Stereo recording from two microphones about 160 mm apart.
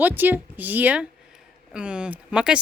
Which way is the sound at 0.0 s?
10° right (ahead or behind).